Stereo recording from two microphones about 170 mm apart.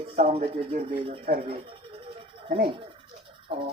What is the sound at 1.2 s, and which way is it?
Speech, 60° right (ahead or behind).